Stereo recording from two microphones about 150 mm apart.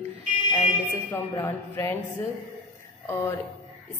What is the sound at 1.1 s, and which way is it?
Speech, 15° left (ahead or behind).